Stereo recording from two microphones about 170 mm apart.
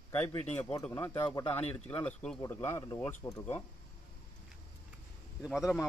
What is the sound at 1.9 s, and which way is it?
Speech, 10° left (ahead or behind).